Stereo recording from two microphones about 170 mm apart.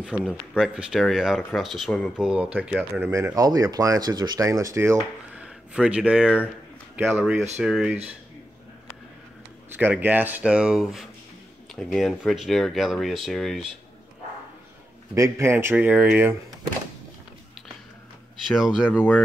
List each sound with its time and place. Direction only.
0.0 s speech: 5° right (ahead or behind)
5.3 s speech: 5° right (ahead or behind)
9.7 s speech: 10° right (ahead or behind)
15.1 s speech: 15° right (ahead or behind)
18.9 s speech: 10° left (ahead or behind)